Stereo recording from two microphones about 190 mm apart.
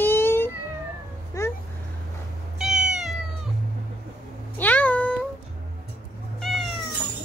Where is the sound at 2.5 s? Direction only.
Centre (ahead or behind).